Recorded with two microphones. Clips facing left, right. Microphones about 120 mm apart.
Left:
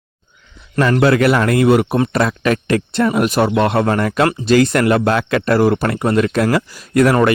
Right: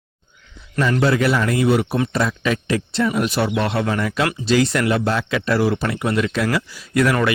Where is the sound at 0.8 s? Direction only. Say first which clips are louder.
Left 5 dB; 60° left (ahead or behind).